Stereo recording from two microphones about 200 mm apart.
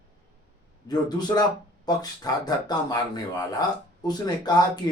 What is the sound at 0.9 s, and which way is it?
Speech, 20° left (ahead or behind).